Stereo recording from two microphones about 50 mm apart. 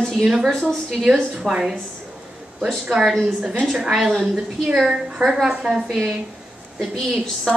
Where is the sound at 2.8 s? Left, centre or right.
Centre.